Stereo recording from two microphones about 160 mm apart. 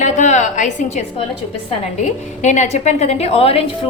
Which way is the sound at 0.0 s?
50° left (ahead or behind).